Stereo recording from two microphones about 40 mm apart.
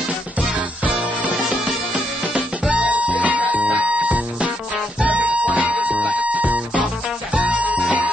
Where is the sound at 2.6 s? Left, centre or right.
Right.